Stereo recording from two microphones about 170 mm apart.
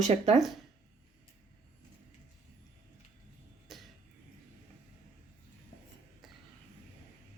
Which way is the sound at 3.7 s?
Centre (ahead or behind).